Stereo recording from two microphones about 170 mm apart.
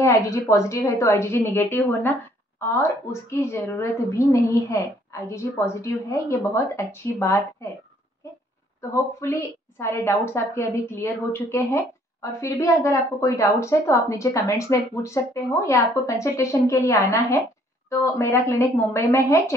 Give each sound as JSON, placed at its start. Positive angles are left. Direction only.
{"t": 0.0, "sound": "a woman's voice", "side_deg": 15}
{"t": 9.2, "sound": "a woman's voice", "side_deg": 15}